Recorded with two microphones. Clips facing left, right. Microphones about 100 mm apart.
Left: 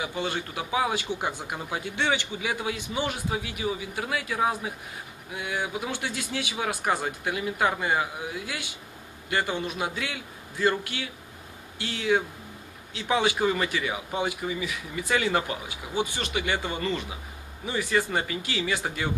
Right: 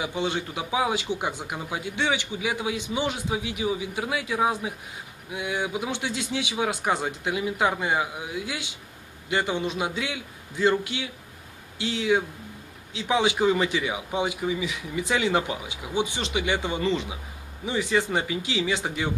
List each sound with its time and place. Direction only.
0.0 s a man's voice: 15° right (ahead or behind)